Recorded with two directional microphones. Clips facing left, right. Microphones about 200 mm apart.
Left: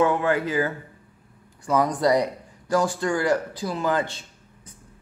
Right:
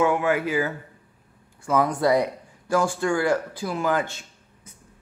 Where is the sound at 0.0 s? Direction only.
10° right (ahead or behind).